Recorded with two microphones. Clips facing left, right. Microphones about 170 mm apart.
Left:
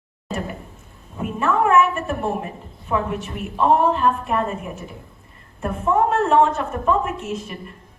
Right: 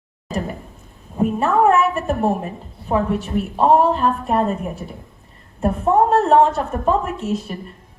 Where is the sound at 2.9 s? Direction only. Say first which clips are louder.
Right 4 dB; 35° right (ahead or behind).